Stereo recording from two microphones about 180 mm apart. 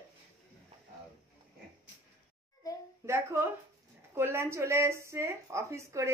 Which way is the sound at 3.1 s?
15° right (ahead or behind).